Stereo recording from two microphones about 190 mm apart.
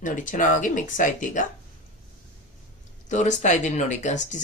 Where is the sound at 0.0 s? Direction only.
45° left (ahead or behind).